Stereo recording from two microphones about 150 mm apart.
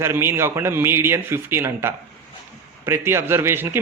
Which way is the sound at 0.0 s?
15° right (ahead or behind).